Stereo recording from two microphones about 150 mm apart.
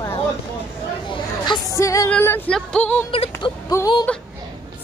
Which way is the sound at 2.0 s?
10° left (ahead or behind).